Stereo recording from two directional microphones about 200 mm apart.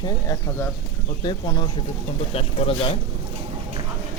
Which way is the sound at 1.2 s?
20° left (ahead or behind).